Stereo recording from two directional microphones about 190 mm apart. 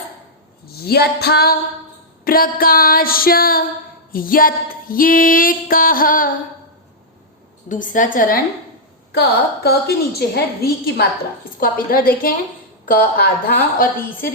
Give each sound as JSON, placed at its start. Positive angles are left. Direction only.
{"t": 0.8, "sound": "a woman's voice", "side_deg": 55}
{"t": 2.2, "sound": "female singing", "side_deg": 50}
{"t": 7.7, "sound": "female singing", "side_deg": 45}
{"t": 9.1, "sound": "a woman's voice", "side_deg": 60}
{"t": 11.6, "sound": "female singing", "side_deg": 50}